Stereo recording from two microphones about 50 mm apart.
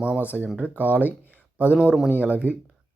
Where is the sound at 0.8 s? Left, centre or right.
Right.